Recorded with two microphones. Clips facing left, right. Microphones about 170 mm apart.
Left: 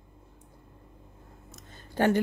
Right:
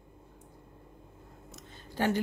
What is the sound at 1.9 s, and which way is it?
Speech, 55° left (ahead or behind).